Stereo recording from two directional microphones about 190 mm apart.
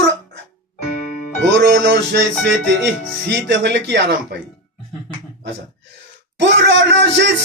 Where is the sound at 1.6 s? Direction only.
65° right (ahead or behind).